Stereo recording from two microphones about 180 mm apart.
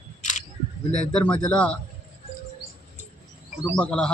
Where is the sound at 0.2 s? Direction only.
40° left (ahead or behind).